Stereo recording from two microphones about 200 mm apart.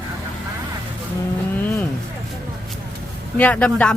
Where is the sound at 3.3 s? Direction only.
5° left (ahead or behind).